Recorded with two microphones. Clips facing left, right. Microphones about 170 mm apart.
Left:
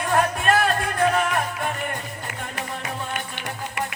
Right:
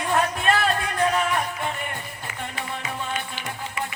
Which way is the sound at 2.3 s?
55° left (ahead or behind).